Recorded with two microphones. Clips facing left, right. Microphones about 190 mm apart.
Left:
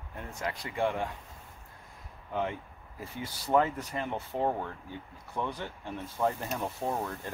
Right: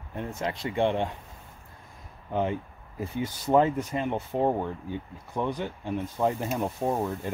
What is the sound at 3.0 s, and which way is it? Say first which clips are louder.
Speech: right 8 dB; 20° right (ahead or behind).